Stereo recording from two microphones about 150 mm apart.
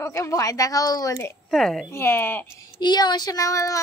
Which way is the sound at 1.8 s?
15° left (ahead or behind).